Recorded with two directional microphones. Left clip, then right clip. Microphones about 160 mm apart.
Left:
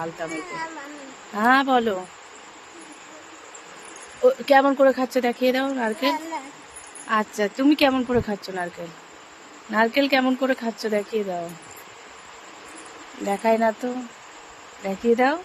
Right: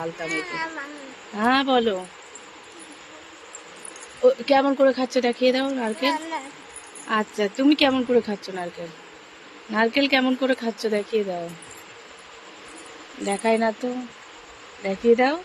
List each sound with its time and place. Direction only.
0.0 s speech: 5° left (ahead or behind)
4.2 s speech: 20° left (ahead or behind)
7.1 s speech: centre (ahead or behind)
9.7 s speech: 10° left (ahead or behind)
13.2 s speech: 10° left (ahead or behind)
14.8 s speech: 5° left (ahead or behind)